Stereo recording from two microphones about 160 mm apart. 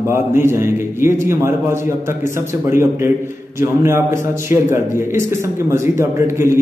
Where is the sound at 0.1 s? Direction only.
15° right (ahead or behind).